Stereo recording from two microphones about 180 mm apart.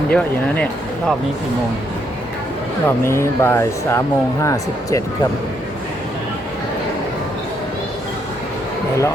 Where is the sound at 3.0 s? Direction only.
15° left (ahead or behind).